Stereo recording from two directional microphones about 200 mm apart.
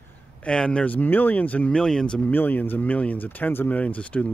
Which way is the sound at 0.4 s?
5° left (ahead or behind).